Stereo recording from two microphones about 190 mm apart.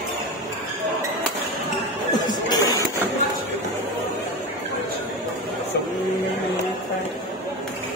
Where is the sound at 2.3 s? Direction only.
20° left (ahead or behind).